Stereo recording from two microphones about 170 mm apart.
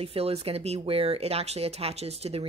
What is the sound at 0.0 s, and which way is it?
Speech, 35° right (ahead or behind).